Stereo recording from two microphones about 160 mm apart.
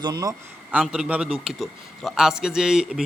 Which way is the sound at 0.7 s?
5° right (ahead or behind).